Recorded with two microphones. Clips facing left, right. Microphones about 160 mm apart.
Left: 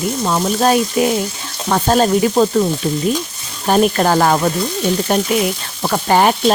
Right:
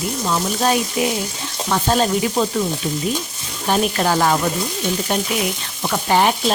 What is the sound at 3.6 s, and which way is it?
Speech, 50° left (ahead or behind).